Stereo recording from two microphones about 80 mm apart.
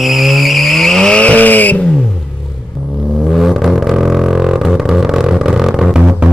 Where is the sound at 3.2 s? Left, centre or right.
Centre.